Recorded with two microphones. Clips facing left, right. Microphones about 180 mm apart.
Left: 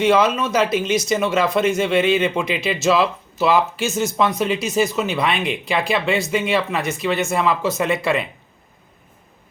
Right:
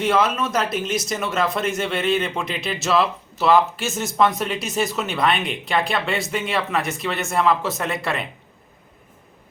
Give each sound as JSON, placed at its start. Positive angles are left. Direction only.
{"t": 0.0, "sound": "speech", "side_deg": 0}